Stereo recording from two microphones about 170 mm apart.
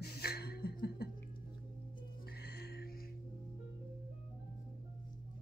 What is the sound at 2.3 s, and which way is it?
Music, 70° left (ahead or behind).